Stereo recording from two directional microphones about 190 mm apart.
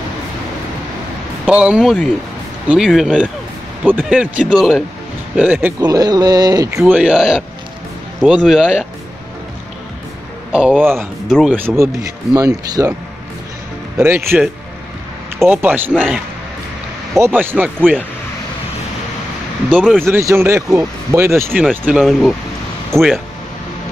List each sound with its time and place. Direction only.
1.4 s speech: 5° right (ahead or behind)
5.8 s speech: 20° right (ahead or behind)
6.8 s speech: 5° right (ahead or behind)
10.5 s speech: 5° right (ahead or behind)
13.9 s speech: 10° right (ahead or behind)
15.9 s speech: centre (ahead or behind)
17.2 s speech: 10° right (ahead or behind)
19.8 s speech: 5° left (ahead or behind)
20.1 s speech: 15° right (ahead or behind)
21.8 s speech: centre (ahead or behind)